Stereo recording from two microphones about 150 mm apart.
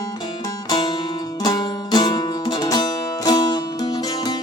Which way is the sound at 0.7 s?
25° left (ahead or behind).